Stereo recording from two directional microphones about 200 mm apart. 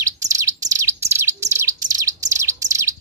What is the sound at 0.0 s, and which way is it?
Bird, 15° right (ahead or behind).